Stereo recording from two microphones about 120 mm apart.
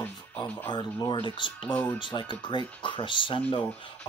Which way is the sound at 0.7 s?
40° left (ahead or behind).